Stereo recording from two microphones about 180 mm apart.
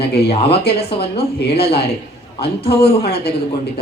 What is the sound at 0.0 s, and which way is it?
Speech, 65° left (ahead or behind).